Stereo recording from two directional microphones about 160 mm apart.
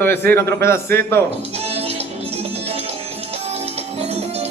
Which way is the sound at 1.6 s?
40° right (ahead or behind).